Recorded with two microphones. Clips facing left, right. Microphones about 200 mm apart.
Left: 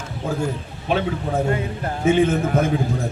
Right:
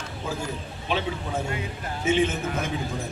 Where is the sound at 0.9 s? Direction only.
50° left (ahead or behind).